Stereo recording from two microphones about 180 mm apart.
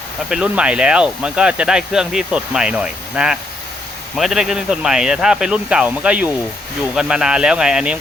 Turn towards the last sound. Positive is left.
turn(degrees=-5)  # may be behind; listen again after turning